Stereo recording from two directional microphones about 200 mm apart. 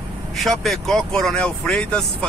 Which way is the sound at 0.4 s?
Centre (ahead or behind).